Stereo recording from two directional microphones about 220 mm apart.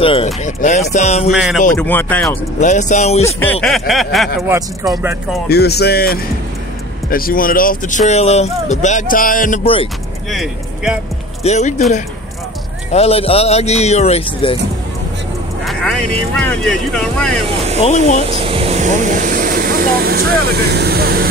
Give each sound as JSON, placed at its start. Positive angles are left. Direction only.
{"t": 0.0, "sound": "speech", "side_deg": 25}
{"t": 1.3, "sound": "speech", "side_deg": 0}
{"t": 1.8, "sound": "speech", "side_deg": 10}
{"t": 2.6, "sound": "speech", "side_deg": 35}
{"t": 3.6, "sound": "speech", "side_deg": 0}
{"t": 4.5, "sound": "speech", "side_deg": -15}
{"t": 5.5, "sound": "speech", "side_deg": 45}
{"t": 10.3, "sound": "speech", "side_deg": 0}
{"t": 11.4, "sound": "speech", "side_deg": 30}
{"t": 15.6, "sound": "speech", "side_deg": 0}
{"t": 17.8, "sound": "speech", "side_deg": 30}
{"t": 18.2, "sound": "speech", "side_deg": -25}